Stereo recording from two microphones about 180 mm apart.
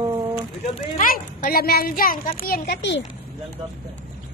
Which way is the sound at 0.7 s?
50° left (ahead or behind).